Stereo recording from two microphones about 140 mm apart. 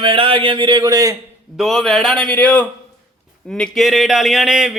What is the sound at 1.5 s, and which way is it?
A man's voice, centre (ahead or behind).